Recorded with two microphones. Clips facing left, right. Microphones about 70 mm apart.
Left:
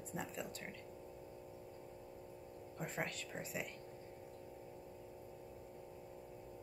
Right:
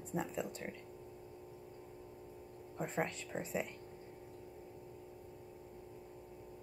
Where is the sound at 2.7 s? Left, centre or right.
Centre.